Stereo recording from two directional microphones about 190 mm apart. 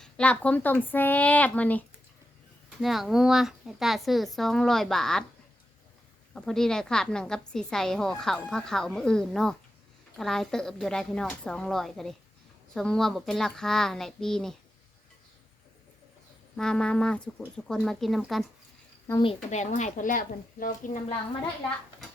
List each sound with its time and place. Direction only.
0.0 s speech: 5° left (ahead or behind)
2.8 s a woman's voice: centre (ahead or behind)
6.3 s a woman's voice: centre (ahead or behind)
16.6 s a woman's voice: 5° left (ahead or behind)
19.2 s a woman's voice: 35° left (ahead or behind)